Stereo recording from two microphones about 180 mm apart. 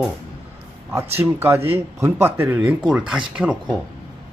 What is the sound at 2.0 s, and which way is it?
Speech, 15° right (ahead or behind).